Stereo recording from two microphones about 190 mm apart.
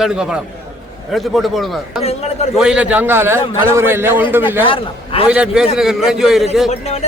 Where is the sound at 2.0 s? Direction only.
35° left (ahead or behind).